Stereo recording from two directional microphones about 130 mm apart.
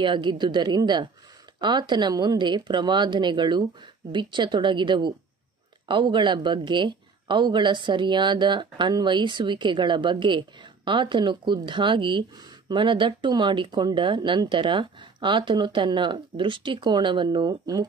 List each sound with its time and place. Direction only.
0.0 s speech: 35° right (ahead or behind)